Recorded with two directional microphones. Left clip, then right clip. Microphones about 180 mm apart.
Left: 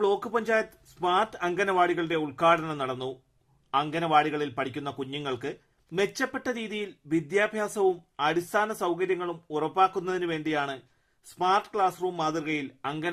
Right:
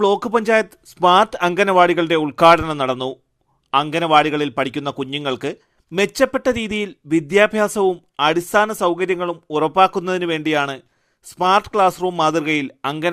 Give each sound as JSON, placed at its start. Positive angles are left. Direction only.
{"t": 0.0, "sound": "a man's voice", "side_deg": -45}